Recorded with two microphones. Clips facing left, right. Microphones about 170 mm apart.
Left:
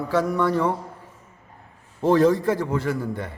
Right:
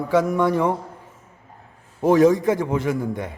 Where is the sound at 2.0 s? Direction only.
15° right (ahead or behind).